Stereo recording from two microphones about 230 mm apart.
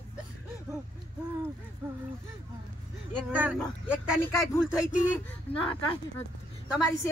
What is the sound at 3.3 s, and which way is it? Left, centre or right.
Speech, centre.